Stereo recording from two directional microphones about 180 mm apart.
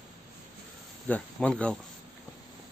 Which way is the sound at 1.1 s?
5° left (ahead or behind).